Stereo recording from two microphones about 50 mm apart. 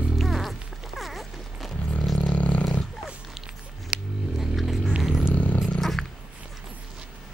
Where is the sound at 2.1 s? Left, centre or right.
Left.